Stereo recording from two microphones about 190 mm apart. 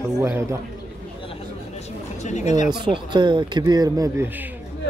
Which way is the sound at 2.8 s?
25° right (ahead or behind).